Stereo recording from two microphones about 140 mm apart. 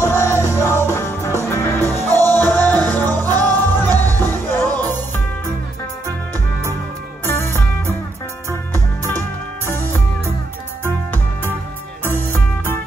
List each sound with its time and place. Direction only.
0.0 s music: 20° left (ahead or behind)
1.8 s music: 20° right (ahead or behind)
2.3 s music: 15° left (ahead or behind)
7.2 s music: 15° left (ahead or behind)
12.0 s music: 15° left (ahead or behind)